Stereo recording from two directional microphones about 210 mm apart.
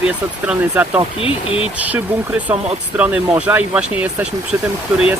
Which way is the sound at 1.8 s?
5° right (ahead or behind).